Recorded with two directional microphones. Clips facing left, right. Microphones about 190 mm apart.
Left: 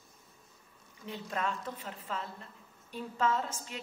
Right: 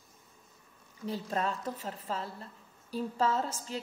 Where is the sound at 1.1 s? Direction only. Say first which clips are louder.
Right 3 dB; 35° right (ahead or behind).